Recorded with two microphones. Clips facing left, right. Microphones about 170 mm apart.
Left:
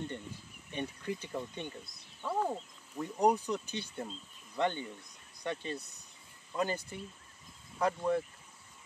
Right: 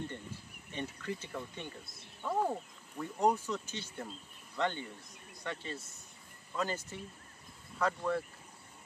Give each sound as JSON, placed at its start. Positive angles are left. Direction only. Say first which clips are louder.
{"t": 0.7, "sound": "speech", "louder": "left 2 dB", "side_deg": 15}
{"t": 2.3, "sound": "speech", "louder": "right 1 dB", "side_deg": -10}
{"t": 3.0, "sound": "speech", "louder": "left 2 dB", "side_deg": 15}